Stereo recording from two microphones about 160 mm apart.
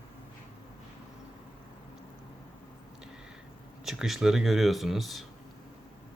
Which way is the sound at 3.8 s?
Centre (ahead or behind).